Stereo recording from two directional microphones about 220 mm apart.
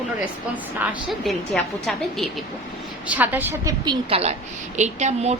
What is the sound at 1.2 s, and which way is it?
A woman's voice, centre (ahead or behind).